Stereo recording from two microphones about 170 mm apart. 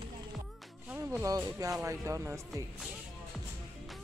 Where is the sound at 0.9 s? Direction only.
15° right (ahead or behind).